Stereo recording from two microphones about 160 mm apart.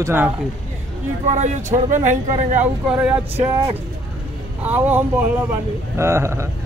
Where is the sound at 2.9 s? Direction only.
5° right (ahead or behind).